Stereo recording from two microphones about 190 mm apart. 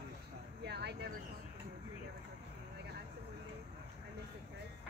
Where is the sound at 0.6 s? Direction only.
60° right (ahead or behind).